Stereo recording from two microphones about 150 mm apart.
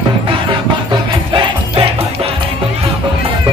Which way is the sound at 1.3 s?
35° right (ahead or behind).